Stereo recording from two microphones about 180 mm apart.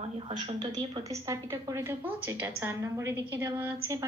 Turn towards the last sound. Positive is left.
turn(degrees=-15)  # may be behind; listen again after turning